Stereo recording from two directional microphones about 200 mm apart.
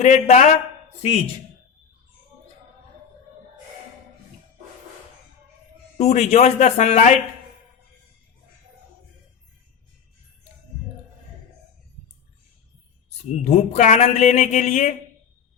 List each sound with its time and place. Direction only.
0.0 s speech: 35° left (ahead or behind)
6.0 s speech: 35° left (ahead or behind)
13.3 s speech: 35° left (ahead or behind)